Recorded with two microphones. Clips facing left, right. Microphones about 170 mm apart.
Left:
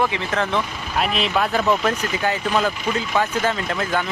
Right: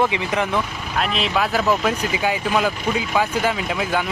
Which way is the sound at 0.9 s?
Centre (ahead or behind).